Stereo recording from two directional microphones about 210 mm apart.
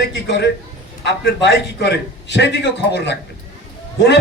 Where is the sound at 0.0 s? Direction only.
55° left (ahead or behind).